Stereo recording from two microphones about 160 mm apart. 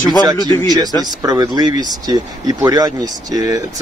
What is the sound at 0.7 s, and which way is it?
Speech, 25° right (ahead or behind).